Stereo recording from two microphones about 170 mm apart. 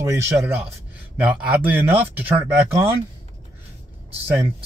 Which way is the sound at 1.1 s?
10° right (ahead or behind).